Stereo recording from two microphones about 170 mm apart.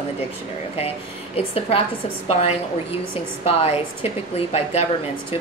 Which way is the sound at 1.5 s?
35° left (ahead or behind).